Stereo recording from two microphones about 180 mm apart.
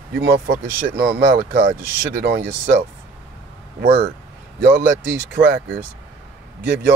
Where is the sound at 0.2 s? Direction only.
65° right (ahead or behind).